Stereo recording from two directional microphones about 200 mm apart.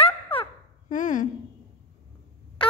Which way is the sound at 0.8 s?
40° left (ahead or behind).